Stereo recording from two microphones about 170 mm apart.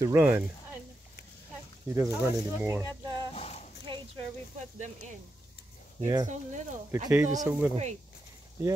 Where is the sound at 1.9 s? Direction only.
15° right (ahead or behind).